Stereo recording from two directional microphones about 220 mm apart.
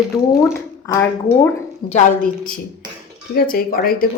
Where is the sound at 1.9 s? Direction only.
35° left (ahead or behind).